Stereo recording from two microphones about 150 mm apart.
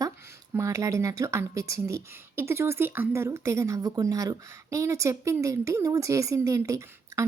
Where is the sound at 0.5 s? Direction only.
20° right (ahead or behind).